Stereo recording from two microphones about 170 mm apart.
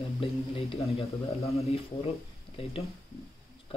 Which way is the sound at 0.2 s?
35° left (ahead or behind).